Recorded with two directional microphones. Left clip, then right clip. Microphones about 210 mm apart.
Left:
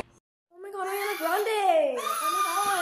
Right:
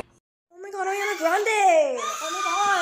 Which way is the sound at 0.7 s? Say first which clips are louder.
Right 4 dB; 20° right (ahead or behind).